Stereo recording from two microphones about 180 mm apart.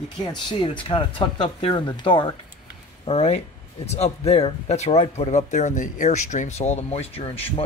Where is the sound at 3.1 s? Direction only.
35° left (ahead or behind).